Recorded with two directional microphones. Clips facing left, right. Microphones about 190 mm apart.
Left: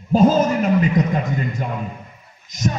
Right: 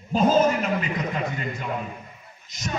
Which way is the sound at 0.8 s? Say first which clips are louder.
Left 8 dB; 40° left (ahead or behind).